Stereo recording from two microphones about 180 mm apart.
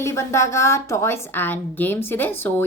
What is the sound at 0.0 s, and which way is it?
A woman's voice, 15° left (ahead or behind).